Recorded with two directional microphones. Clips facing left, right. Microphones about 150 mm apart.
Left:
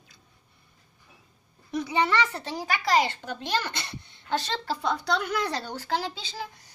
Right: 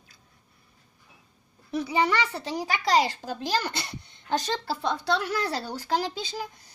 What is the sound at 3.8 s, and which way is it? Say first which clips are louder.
Speech: right 1 dB; 15° right (ahead or behind).